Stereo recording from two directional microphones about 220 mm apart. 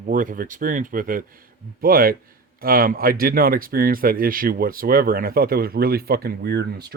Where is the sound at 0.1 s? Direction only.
40° right (ahead or behind).